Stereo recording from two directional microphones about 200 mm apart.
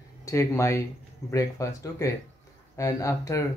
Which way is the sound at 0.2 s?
15° left (ahead or behind).